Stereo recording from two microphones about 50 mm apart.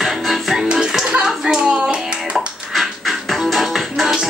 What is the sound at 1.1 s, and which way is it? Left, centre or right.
Clapping, centre.